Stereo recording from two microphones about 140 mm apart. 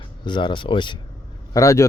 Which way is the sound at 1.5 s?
25° left (ahead or behind).